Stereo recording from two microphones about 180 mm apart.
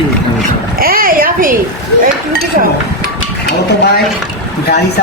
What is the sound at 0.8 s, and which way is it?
Speech, 55° right (ahead or behind).